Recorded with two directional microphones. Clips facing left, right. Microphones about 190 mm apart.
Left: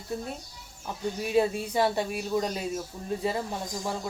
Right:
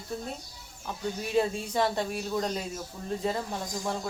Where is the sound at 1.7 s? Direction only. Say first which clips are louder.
Left 2 dB; 5° left (ahead or behind).